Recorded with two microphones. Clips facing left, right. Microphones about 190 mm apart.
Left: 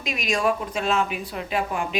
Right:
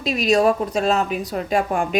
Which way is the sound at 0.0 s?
35° right (ahead or behind).